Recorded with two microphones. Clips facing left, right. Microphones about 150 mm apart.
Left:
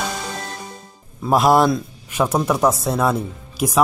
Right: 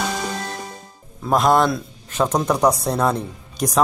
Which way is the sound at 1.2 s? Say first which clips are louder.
Left 2 dB; 5° left (ahead or behind).